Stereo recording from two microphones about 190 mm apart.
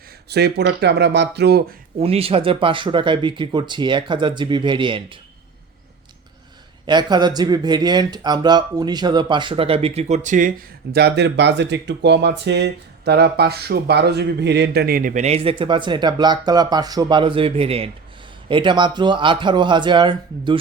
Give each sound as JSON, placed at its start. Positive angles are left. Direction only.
{"t": 0.3, "sound": "speech", "side_deg": -60}
{"t": 2.0, "sound": "speech", "side_deg": -30}
{"t": 6.8, "sound": "speech", "side_deg": -20}